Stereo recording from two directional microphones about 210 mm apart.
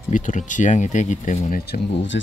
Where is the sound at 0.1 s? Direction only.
35° left (ahead or behind).